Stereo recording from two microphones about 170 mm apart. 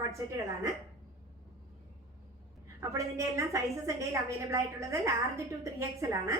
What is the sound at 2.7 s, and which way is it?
A woman's voice, 20° right (ahead or behind).